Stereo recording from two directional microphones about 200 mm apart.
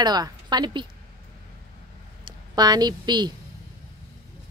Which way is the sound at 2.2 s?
20° right (ahead or behind).